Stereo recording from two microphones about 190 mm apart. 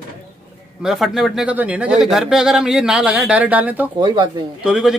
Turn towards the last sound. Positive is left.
turn(degrees=-5)  # may be behind; listen again after turning